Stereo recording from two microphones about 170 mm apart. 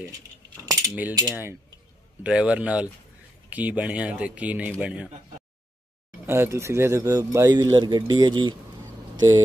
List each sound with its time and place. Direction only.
0.7 s coin: 15° right (ahead or behind)
1.3 s a man's voice: 10° right (ahead or behind)
6.2 s speech: 15° right (ahead or behind)